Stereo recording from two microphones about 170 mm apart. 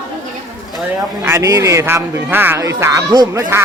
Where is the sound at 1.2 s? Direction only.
15° right (ahead or behind).